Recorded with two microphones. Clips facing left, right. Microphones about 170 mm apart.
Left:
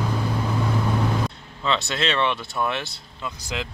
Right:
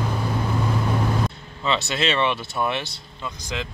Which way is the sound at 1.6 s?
5° right (ahead or behind).